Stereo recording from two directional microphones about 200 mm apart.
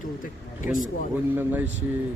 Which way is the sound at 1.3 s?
10° right (ahead or behind).